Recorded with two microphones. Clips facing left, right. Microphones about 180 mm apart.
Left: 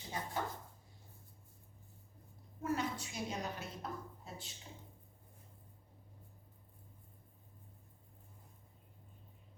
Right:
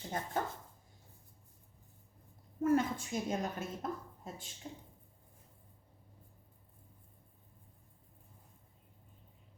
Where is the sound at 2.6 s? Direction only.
50° right (ahead or behind).